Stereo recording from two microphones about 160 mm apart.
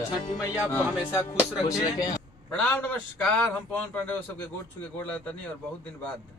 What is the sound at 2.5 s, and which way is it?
A man's voice, 5° left (ahead or behind).